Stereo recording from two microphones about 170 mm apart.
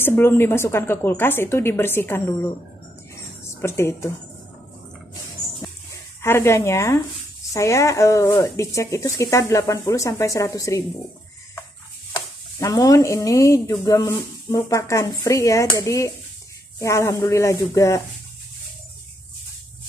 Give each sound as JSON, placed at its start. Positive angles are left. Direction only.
{"t": 0.0, "sound": "speech", "side_deg": 15}
{"t": 3.6, "sound": "speech", "side_deg": 15}
{"t": 6.2, "sound": "speech", "side_deg": 15}
{"t": 12.5, "sound": "speech", "side_deg": 20}